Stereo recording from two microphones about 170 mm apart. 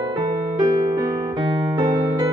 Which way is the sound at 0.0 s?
25° right (ahead or behind).